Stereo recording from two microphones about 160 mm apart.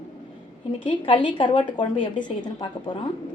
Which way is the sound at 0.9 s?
35° left (ahead or behind).